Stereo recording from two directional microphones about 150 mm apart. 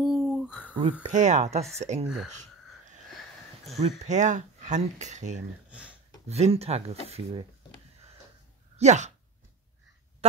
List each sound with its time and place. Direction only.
0.0 s a sound: centre (ahead or behind)
1.0 s speech: 50° right (ahead or behind)
3.8 s speech: 50° right (ahead or behind)
5.7 s speech: 10° right (ahead or behind)
6.2 s speech: 45° right (ahead or behind)
8.7 s speech: 50° right (ahead or behind)